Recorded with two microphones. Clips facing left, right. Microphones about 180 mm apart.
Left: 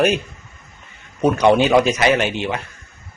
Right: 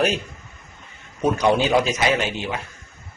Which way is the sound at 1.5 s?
70° left (ahead or behind).